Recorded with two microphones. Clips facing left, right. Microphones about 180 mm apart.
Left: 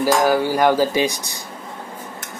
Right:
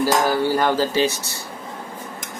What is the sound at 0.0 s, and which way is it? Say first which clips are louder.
Cutlery: left 2 dB; 15° left (ahead or behind).